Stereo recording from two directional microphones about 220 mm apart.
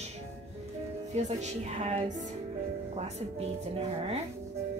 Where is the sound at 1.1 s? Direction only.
30° right (ahead or behind).